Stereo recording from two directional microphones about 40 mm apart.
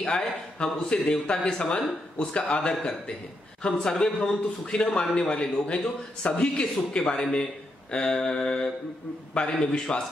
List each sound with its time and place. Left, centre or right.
0.0 s speech: centre
2.7 s a man's voice: centre